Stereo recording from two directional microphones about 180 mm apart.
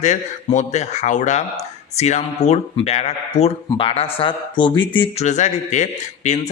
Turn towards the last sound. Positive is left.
turn(degrees=40)  # may be behind; listen again after turning